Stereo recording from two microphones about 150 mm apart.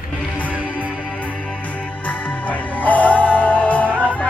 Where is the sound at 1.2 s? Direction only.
10° left (ahead or behind).